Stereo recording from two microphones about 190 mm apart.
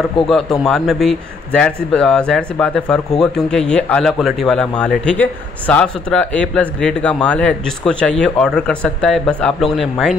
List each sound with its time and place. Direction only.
0.3 s speech: centre (ahead or behind)